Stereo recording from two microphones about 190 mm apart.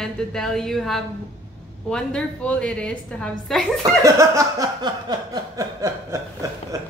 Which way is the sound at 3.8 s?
15° right (ahead or behind).